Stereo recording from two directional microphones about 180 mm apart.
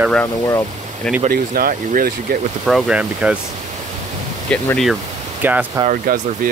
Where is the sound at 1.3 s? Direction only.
55° right (ahead or behind).